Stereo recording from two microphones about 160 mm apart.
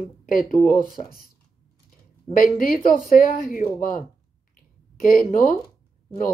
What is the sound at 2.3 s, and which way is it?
Speech, 65° left (ahead or behind).